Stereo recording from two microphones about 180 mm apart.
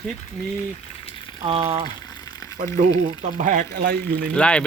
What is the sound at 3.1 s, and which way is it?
Speech, 40° right (ahead or behind).